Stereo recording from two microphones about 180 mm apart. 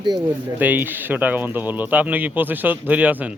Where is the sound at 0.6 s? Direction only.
10° right (ahead or behind).